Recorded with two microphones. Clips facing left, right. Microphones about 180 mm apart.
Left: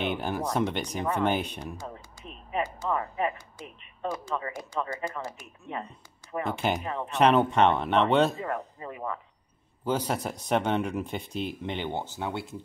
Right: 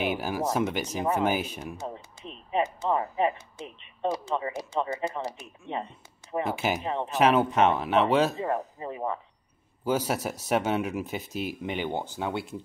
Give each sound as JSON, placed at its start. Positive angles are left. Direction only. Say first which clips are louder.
{"t": 0.0, "sound": "speech", "louder": "right 1 dB", "side_deg": -5}
{"t": 1.8, "sound": "typing", "louder": "right 4 dB", "side_deg": -20}
{"t": 2.5, "sound": "speech", "louder": "right 3 dB", "side_deg": -25}
{"t": 6.4, "sound": "speech", "louder": "even", "side_deg": -5}
{"t": 6.8, "sound": "speech", "louder": "right 3 dB", "side_deg": -25}
{"t": 7.1, "sound": "speech", "louder": "left 1 dB", "side_deg": 0}
{"t": 8.4, "sound": "speech", "louder": "right 4 dB", "side_deg": -25}
{"t": 9.8, "sound": "speech", "louder": "right 1 dB", "side_deg": -10}